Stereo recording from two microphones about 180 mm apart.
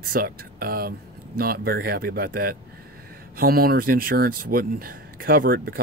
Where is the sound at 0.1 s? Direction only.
55° right (ahead or behind).